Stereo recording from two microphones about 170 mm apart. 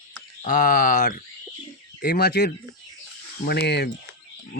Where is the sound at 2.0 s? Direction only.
65° left (ahead or behind).